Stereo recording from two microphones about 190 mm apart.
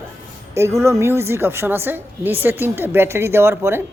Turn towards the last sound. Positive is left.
turn(degrees=-15)  # may be behind; listen again after turning